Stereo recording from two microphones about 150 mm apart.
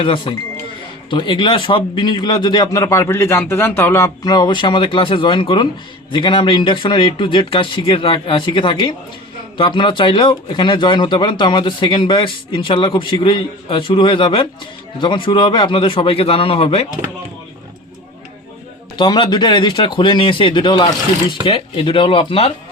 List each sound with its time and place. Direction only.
0.0 s speech: 35° left (ahead or behind)
18.9 s speech: 30° left (ahead or behind)